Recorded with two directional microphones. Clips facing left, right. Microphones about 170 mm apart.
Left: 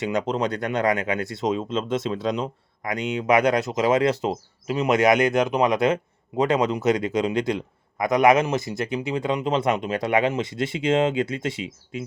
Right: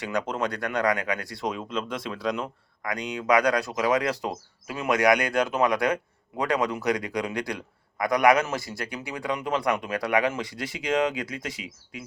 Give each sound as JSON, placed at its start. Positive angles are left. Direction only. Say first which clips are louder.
{"t": 0.0, "sound": "speech", "louder": "left 4 dB", "side_deg": 20}